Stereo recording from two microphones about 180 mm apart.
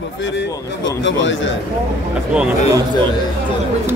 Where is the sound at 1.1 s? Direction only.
90° left.